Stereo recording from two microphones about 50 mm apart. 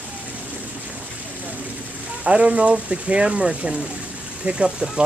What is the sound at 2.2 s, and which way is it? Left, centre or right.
Speech, right.